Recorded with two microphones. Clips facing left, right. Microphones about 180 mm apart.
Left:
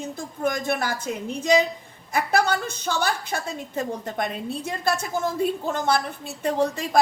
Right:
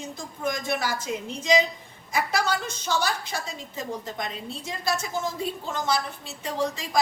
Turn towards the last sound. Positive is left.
turn(degrees=55)  # may be behind; listen again after turning